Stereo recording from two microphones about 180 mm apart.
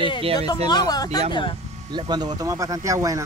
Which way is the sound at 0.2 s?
35° right (ahead or behind).